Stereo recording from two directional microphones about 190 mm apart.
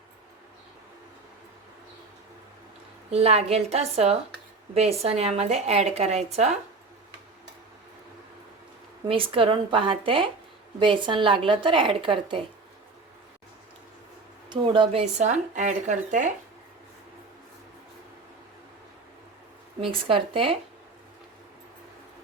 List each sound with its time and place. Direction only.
3.1 s speech: 30° right (ahead or behind)
9.0 s speech: 30° right (ahead or behind)
14.5 s speech: 25° right (ahead or behind)
19.8 s speech: 25° right (ahead or behind)